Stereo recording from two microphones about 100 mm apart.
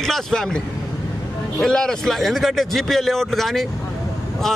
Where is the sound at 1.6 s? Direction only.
5° left (ahead or behind).